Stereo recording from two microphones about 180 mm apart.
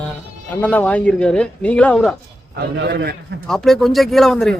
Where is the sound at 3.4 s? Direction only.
Centre (ahead or behind).